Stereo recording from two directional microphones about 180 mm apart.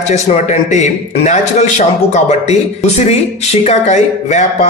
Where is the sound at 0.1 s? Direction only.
40° left (ahead or behind).